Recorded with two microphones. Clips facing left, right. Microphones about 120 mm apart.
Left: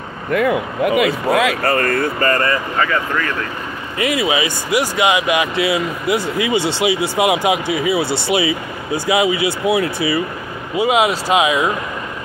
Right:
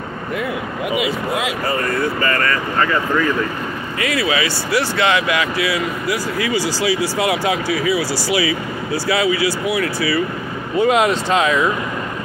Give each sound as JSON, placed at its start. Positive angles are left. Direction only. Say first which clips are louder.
{"t": 0.3, "sound": "speech", "louder": "left 8 dB", "side_deg": 60}
{"t": 2.8, "sound": "speech", "louder": "right 4 dB", "side_deg": -5}
{"t": 4.0, "sound": "speech", "louder": "left 2 dB", "side_deg": 20}
{"t": 10.8, "sound": "speech", "louder": "even", "side_deg": 5}